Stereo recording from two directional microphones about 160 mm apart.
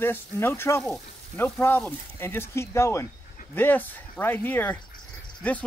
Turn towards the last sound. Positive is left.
turn(degrees=10)  # may be behind; listen again after turning